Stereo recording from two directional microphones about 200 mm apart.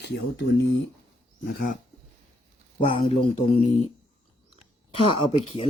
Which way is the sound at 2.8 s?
30° left (ahead or behind).